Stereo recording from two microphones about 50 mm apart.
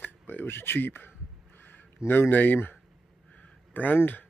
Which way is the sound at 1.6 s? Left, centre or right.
Left.